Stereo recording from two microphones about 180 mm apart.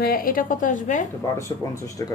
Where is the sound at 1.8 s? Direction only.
20° left (ahead or behind).